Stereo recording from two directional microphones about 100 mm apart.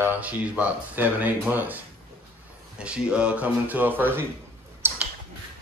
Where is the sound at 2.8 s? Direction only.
10° right (ahead or behind).